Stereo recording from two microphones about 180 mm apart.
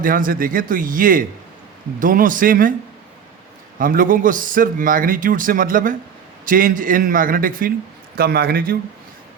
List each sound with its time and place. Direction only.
0.0 s a man's voice: 50° right (ahead or behind)
3.8 s a man's voice: 50° right (ahead or behind)